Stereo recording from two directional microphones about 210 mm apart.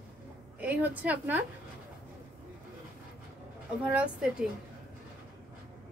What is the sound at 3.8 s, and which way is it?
Speech, 5° right (ahead or behind).